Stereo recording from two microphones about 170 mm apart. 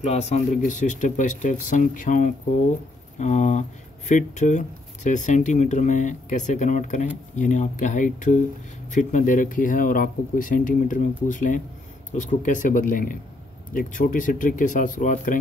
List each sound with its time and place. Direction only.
0.0 s speech: 40° left (ahead or behind)